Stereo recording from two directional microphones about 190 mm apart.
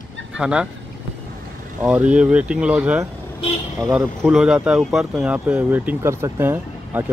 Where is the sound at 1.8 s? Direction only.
5° right (ahead or behind).